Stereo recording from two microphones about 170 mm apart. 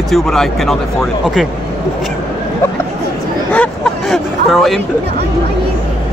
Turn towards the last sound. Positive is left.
turn(degrees=0)  # may be behind; listen again after turning